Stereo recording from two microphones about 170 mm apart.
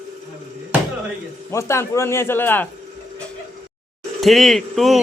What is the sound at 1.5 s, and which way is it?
A man's voice, 15° left (ahead or behind).